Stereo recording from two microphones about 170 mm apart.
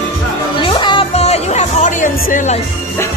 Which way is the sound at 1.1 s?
40° left (ahead or behind).